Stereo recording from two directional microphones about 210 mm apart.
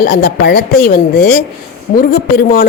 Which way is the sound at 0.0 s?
45° left (ahead or behind).